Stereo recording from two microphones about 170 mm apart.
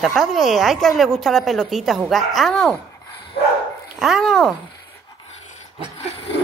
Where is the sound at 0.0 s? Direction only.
Centre (ahead or behind).